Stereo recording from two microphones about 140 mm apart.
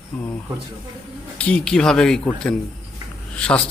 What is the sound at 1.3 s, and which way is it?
Speech, 10° left (ahead or behind).